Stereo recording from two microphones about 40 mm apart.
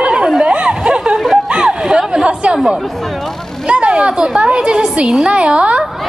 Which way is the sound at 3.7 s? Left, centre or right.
Right.